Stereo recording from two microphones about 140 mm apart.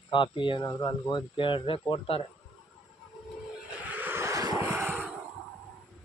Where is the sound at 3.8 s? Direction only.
10° right (ahead or behind).